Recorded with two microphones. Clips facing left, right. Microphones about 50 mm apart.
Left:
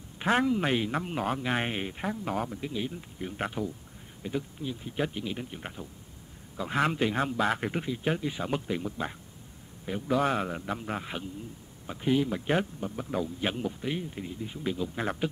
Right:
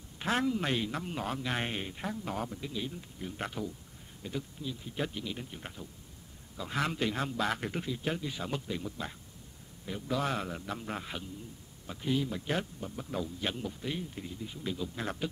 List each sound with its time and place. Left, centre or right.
0.2 s a man's voice: centre
11.9 s a man's voice: left